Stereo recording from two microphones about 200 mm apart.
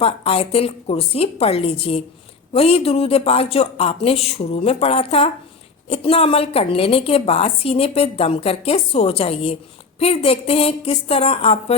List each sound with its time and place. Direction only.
0.0 s a woman's voice: 30° left (ahead or behind)